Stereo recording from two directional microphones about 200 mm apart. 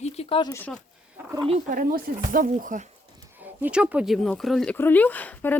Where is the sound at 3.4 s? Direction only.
5° right (ahead or behind).